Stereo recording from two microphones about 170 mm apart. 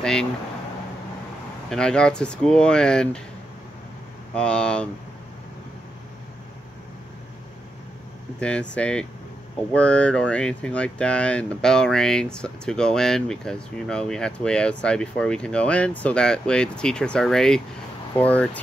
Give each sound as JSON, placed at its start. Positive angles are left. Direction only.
{"t": 0.0, "sound": "speech", "side_deg": 5}
{"t": 1.7, "sound": "speech", "side_deg": 5}
{"t": 4.3, "sound": "speech", "side_deg": 5}
{"t": 8.4, "sound": "speech", "side_deg": 5}